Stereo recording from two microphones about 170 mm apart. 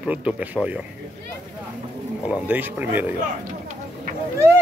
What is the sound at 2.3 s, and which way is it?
Speech, 10° right (ahead or behind).